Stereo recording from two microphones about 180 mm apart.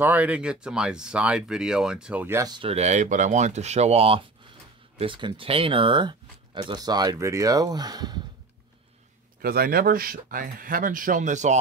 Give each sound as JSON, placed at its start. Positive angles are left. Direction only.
{"t": 0.0, "sound": "speech", "side_deg": -10}
{"t": 2.7, "sound": "speech", "side_deg": -40}
{"t": 9.4, "sound": "speech", "side_deg": -55}